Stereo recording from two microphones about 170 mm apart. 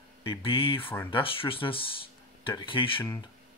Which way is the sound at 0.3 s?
30° left (ahead or behind).